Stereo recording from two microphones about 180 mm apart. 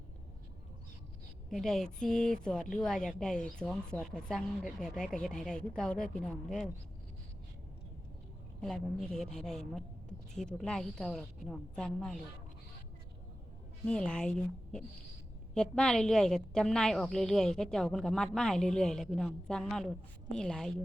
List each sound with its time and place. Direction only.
1.5 s speech: centre (ahead or behind)
8.6 s speech: centre (ahead or behind)
13.8 s speech: 5° left (ahead or behind)